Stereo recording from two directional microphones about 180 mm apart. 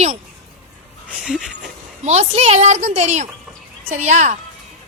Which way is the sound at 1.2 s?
Centre (ahead or behind).